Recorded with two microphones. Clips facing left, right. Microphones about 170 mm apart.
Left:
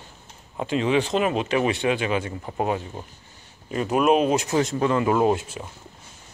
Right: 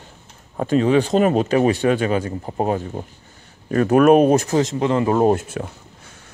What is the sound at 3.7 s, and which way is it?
Speech, 55° right (ahead or behind).